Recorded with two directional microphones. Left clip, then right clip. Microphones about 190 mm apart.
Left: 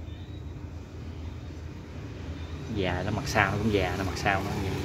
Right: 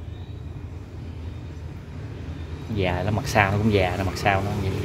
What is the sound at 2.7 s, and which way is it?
Speech, 15° right (ahead or behind).